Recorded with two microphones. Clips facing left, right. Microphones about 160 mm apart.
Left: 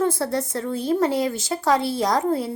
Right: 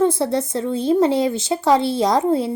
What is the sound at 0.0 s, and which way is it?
A child's voice, 25° right (ahead or behind).